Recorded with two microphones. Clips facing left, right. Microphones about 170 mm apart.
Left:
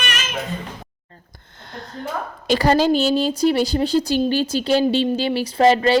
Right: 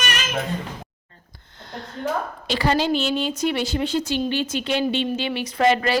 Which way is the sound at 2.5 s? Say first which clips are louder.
Left 5 dB; 40° left (ahead or behind).